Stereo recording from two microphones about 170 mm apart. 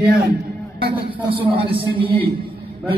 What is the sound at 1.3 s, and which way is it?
Speech, 30° right (ahead or behind).